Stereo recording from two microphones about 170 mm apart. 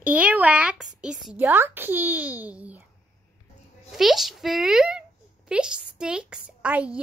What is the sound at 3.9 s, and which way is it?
Speech, centre (ahead or behind).